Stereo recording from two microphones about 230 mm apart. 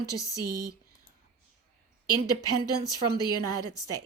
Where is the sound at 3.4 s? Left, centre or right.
Right.